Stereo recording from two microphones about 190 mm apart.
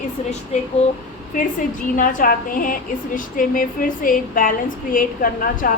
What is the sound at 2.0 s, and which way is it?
A woman's voice, 45° left (ahead or behind).